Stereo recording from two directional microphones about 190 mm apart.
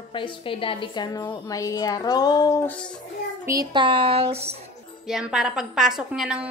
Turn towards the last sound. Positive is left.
turn(degrees=-5)  # may be behind; listen again after turning